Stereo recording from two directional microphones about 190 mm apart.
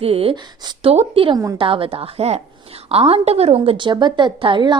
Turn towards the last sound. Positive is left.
turn(degrees=-25)  # may be behind; listen again after turning